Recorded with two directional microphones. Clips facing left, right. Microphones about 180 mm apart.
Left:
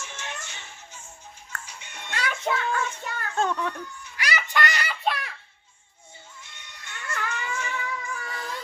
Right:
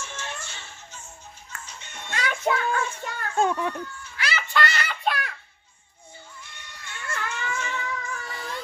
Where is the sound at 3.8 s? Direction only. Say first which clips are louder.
Right 1 dB; 15° left (ahead or behind).